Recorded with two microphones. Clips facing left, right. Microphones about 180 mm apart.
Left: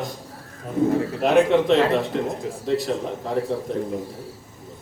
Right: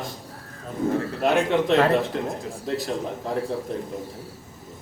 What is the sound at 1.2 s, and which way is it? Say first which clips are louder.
Speech: left 5 dB; centre (ahead or behind).